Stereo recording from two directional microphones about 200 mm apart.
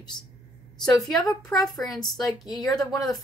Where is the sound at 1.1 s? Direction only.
15° left (ahead or behind).